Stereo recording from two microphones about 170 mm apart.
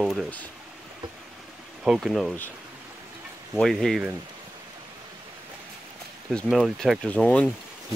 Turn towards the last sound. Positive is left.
turn(degrees=10)  # may be behind; listen again after turning